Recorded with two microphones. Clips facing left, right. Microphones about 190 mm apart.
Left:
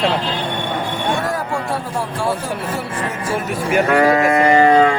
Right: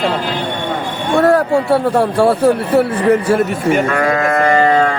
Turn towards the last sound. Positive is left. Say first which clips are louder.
# even
turn(degrees=10)  # may be behind; listen again after turning